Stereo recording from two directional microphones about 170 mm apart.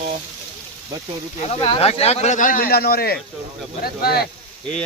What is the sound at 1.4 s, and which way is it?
Speech, 35° left (ahead or behind).